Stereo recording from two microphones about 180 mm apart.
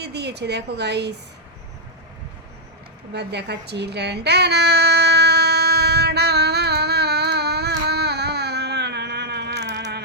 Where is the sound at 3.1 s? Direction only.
70° right (ahead or behind).